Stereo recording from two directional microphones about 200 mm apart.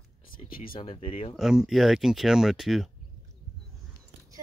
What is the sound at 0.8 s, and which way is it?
Speech, 25° left (ahead or behind).